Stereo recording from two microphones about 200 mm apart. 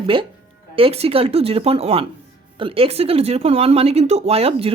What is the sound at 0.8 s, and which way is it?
Speech, 30° right (ahead or behind).